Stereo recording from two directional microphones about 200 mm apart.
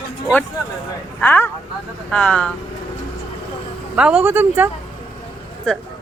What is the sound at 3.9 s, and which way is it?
Speech, 5° right (ahead or behind).